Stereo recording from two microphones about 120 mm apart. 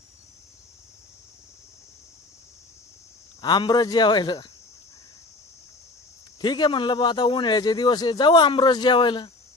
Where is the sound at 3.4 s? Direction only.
35° left (ahead or behind).